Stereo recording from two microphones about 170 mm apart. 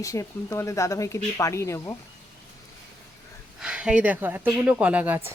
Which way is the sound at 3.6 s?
5° right (ahead or behind).